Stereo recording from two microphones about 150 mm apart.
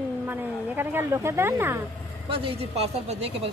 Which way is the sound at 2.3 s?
40° right (ahead or behind).